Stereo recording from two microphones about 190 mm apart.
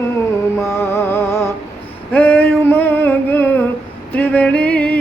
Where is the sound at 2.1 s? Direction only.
10° left (ahead or behind).